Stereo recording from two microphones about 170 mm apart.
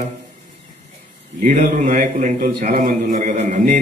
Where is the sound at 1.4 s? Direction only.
50° right (ahead or behind).